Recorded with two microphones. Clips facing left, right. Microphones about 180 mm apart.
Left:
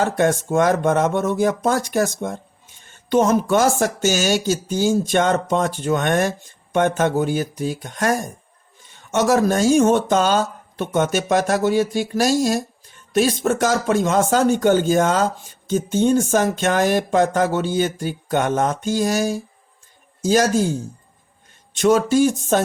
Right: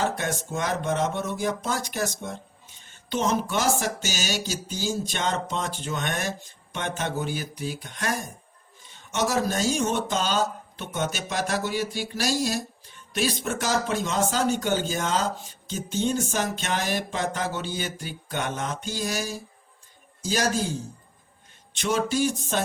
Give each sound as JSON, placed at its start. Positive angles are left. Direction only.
{"t": 0.0, "sound": "speech", "side_deg": 50}